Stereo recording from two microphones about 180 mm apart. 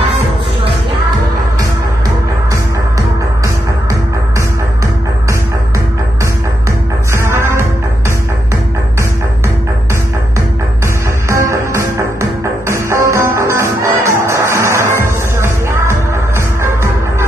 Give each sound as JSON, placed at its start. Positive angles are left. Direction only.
{"t": 7.1, "sound": "music", "side_deg": -15}
{"t": 11.2, "sound": "music", "side_deg": -15}